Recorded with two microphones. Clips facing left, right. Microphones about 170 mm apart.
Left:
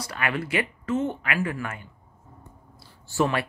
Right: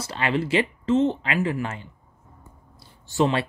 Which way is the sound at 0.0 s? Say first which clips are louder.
Right 4 dB; 25° right (ahead or behind).